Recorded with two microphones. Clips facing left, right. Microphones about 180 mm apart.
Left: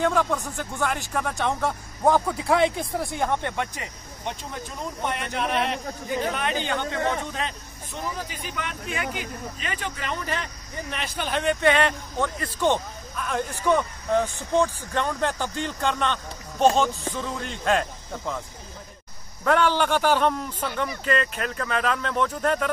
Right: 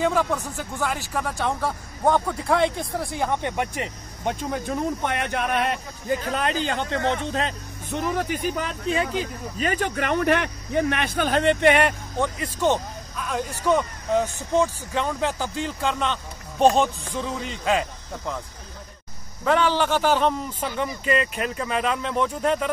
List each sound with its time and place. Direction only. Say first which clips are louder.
0.0 s speech: right 1 dB; 5° right (ahead or behind)
4.3 s a man's voice: right 8 dB; 60° right (ahead or behind)
6.3 s speech: right 2 dB; 35° right (ahead or behind)
7.9 s a man's voice: right 8 dB; 65° right (ahead or behind)
8.4 s speech: right 6 dB; 40° right (ahead or behind)
9.6 s a man's voice: right 11 dB; 45° right (ahead or behind)
11.6 s speech: right 2 dB; 15° right (ahead or behind)
19.4 s a man's voice: even; 5° right (ahead or behind)